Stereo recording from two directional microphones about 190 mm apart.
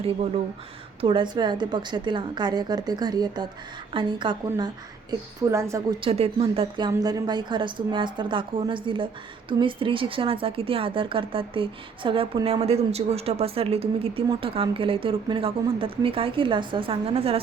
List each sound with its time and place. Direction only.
1.0 s speech: 25° right (ahead or behind)
6.0 s speech: 30° right (ahead or behind)